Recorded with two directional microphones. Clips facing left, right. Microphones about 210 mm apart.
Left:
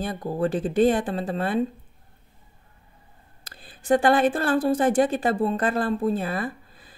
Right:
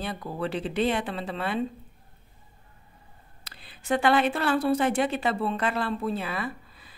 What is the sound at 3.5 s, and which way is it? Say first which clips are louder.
A woman's voice: left 6 dB; 50° left (ahead or behind).